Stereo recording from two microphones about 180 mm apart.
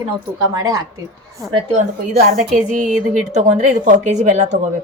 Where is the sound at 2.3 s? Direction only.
45° right (ahead or behind).